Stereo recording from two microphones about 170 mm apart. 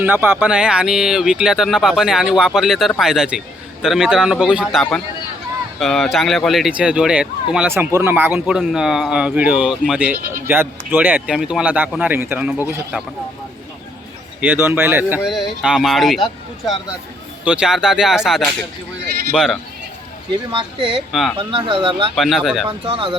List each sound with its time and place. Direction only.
0.0 s speech: 10° right (ahead or behind)
14.4 s speech: 10° right (ahead or behind)
17.4 s speech: 5° right (ahead or behind)
20.5 s speech: 30° right (ahead or behind)
21.1 s speech: centre (ahead or behind)
21.3 s speech: 30° right (ahead or behind)
22.1 s speech: centre (ahead or behind)
22.9 s speech: 30° right (ahead or behind)